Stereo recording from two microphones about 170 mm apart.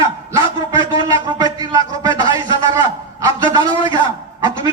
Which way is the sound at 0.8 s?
25° right (ahead or behind).